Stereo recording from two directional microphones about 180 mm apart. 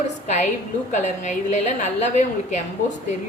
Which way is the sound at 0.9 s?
40° left (ahead or behind).